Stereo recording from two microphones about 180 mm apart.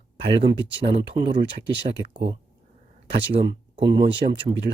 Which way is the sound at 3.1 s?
25° right (ahead or behind).